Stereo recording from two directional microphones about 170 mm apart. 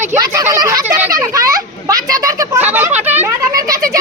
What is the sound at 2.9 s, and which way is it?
Speech, 40° right (ahead or behind).